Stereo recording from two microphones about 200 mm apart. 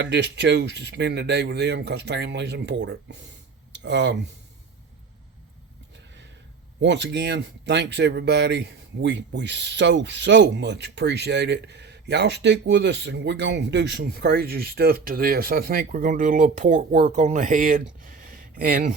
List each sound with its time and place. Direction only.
0.0 s speech: 60° right (ahead or behind)
6.8 s speech: 60° right (ahead or behind); by 18.9 s 45° right (ahead or behind)